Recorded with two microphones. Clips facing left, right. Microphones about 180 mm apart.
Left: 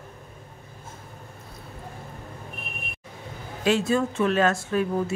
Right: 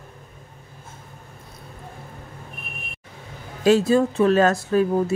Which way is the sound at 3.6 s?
35° right (ahead or behind).